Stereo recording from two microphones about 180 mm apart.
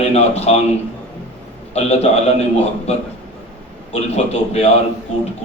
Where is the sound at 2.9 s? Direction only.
35° left (ahead or behind).